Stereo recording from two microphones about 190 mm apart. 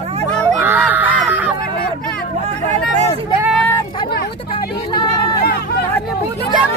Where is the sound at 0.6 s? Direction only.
10° right (ahead or behind).